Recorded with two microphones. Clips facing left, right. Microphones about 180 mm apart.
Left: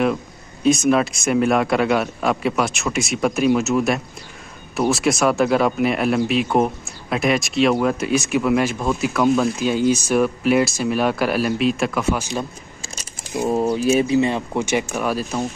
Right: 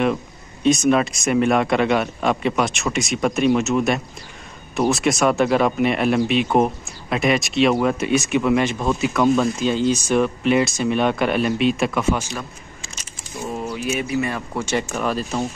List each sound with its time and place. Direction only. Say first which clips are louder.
0.7 s a man's voice: even; centre (ahead or behind)
12.4 s a sound: left 5 dB; 35° left (ahead or behind)
13.5 s speech: left 8 dB; 35° left (ahead or behind); by 15.4 s 5° left (ahead or behind)